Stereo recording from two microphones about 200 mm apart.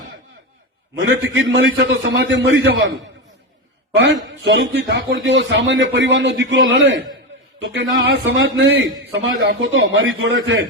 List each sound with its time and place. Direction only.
0.9 s a man's voice: 70° right (ahead or behind)